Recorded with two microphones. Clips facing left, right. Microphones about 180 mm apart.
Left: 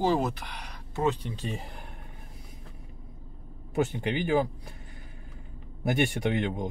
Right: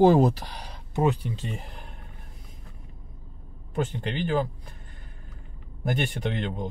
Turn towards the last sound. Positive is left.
turn(degrees=10)  # may be behind; listen again after turning